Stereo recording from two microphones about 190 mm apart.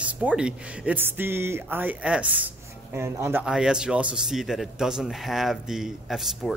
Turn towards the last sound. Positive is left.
turn(degrees=0)  # may be behind; listen again after turning